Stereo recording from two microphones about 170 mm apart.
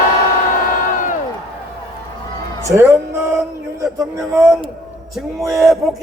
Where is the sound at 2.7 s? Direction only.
20° right (ahead or behind).